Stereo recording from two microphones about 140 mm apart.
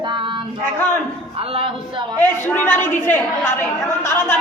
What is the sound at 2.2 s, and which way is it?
A woman's voice, 15° left (ahead or behind).